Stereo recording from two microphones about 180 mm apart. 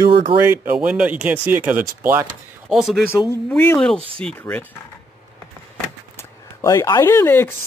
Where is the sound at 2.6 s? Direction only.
Centre (ahead or behind).